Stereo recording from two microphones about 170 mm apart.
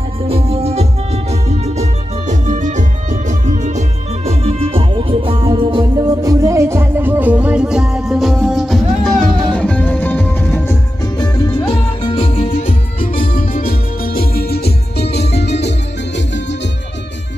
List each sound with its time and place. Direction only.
0.3 s music: 35° right (ahead or behind); by 10.8 s 10° left (ahead or behind)
11.1 s music: 25° left (ahead or behind)
13.2 s music: 55° left (ahead or behind); by 15.7 s 85° left